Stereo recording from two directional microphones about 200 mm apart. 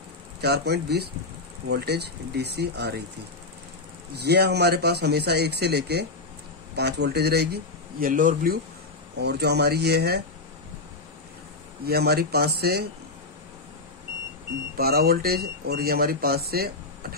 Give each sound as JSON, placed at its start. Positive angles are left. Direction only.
{"t": 0.4, "sound": "speech", "side_deg": -55}
{"t": 4.1, "sound": "speech", "side_deg": -55}
{"t": 9.2, "sound": "speech", "side_deg": -55}
{"t": 11.8, "sound": "speech", "side_deg": -50}
{"t": 14.8, "sound": "speech", "side_deg": -50}